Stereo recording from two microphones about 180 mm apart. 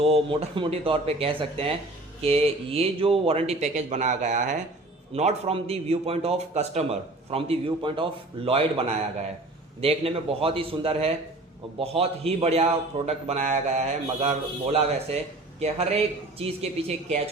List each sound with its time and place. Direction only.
0.0 s a man's voice: 30° right (ahead or behind)